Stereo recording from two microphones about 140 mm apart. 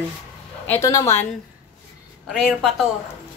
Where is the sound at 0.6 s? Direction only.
20° left (ahead or behind).